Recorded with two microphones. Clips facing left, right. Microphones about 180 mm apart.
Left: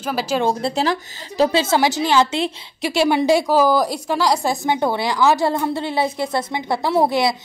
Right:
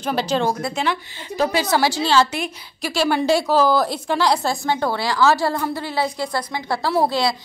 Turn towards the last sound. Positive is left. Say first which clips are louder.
# left 2 dB
turn(degrees=20)  # may be behind; listen again after turning